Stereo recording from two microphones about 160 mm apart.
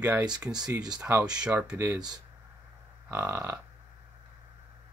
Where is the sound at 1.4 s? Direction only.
5° right (ahead or behind).